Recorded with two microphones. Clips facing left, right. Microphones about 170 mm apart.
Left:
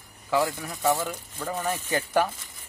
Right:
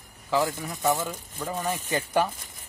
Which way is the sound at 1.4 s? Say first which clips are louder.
Even; 10° right (ahead or behind).